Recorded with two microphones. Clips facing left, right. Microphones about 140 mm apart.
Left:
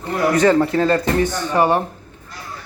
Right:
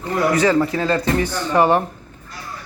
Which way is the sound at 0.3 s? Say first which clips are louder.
Left 5 dB; 55° left (ahead or behind).